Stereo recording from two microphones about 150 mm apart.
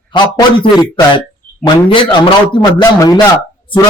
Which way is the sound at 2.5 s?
25° left (ahead or behind).